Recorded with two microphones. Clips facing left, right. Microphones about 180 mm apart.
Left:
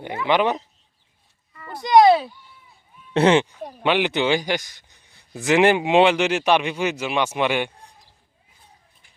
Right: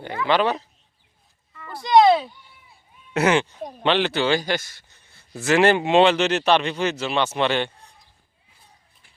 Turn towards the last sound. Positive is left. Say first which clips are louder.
# even
turn(degrees=10)  # may be behind; listen again after turning